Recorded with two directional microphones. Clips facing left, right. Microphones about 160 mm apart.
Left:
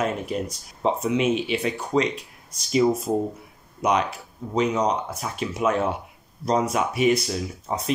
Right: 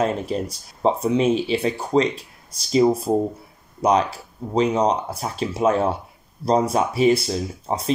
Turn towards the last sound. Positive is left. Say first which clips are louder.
# right 3 dB
turn(degrees=-30)  # may be behind; listen again after turning